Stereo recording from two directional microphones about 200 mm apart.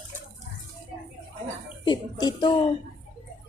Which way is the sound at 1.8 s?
20° left (ahead or behind).